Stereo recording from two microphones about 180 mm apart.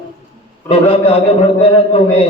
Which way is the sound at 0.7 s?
30° left (ahead or behind).